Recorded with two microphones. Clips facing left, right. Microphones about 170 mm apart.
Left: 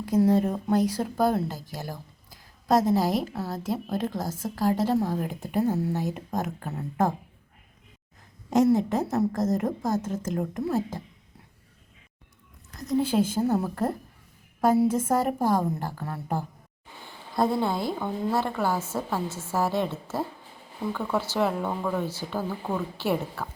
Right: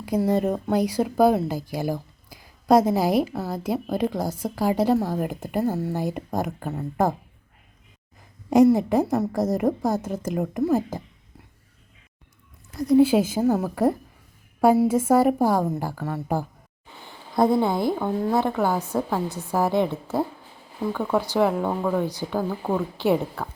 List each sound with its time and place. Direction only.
0.0 s speech: 5° right (ahead or behind)
8.4 s a woman's voice: 10° right (ahead or behind)
12.9 s a woman's voice: 5° right (ahead or behind)
17.1 s a woman's voice: 15° right (ahead or behind)